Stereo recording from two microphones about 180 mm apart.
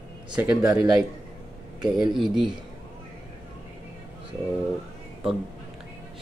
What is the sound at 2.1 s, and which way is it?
Speech, centre (ahead or behind).